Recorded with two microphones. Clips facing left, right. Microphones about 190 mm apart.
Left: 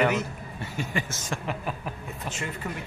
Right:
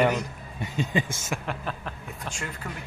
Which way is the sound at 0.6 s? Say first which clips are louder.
Right 4 dB; 20° right (ahead or behind).